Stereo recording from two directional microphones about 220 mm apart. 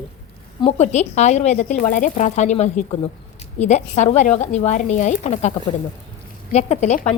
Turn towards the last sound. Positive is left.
turn(degrees=30)  # may be behind; listen again after turning